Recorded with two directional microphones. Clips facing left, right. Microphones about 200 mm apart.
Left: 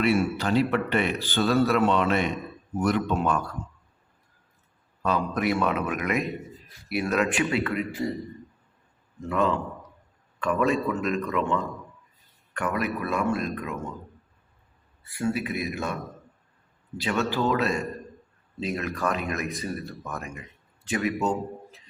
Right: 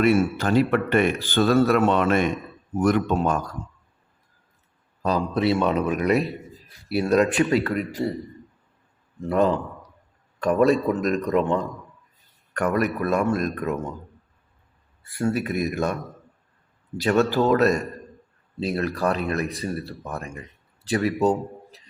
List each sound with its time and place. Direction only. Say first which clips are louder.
0.3 s speech: right 3 dB; 50° right (ahead or behind)
5.0 s speech: right 3 dB; 35° right (ahead or behind)
10.4 s speech: right 5 dB; 40° right (ahead or behind)
15.2 s speech: right 3 dB; 40° right (ahead or behind)
17.0 s a man's voice: right 6 dB; 40° right (ahead or behind)